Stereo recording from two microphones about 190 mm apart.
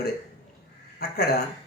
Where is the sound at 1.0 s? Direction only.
55° left (ahead or behind).